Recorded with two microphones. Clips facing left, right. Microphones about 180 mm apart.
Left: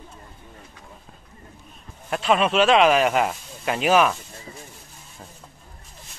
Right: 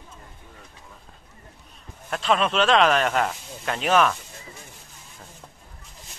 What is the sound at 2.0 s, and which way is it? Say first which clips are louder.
Speech: left 2 dB; 10° left (ahead or behind).